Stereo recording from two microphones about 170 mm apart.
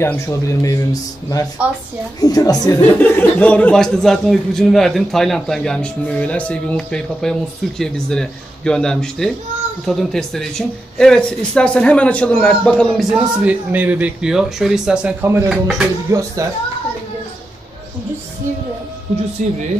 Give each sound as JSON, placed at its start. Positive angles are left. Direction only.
{"t": 0.0, "sound": "a man's voice", "side_deg": 15}
{"t": 1.6, "sound": "a woman's voice", "side_deg": -10}
{"t": 2.1, "sound": "a woman's voice", "side_deg": 20}
{"t": 3.0, "sound": "a man's voice", "side_deg": 10}
{"t": 16.1, "sound": "speech", "side_deg": -20}
{"t": 19.1, "sound": "speech", "side_deg": -40}